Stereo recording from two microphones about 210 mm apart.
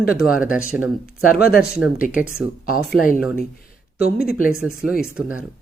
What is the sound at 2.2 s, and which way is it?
Speech, 5° right (ahead or behind).